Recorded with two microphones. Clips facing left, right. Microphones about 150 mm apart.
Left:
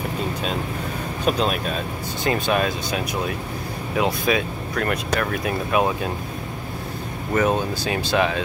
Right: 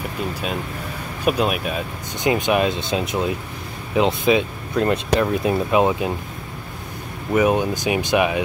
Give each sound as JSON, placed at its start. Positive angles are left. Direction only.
{"t": 1.2, "sound": "speech", "side_deg": -10}
{"t": 7.3, "sound": "speech", "side_deg": -15}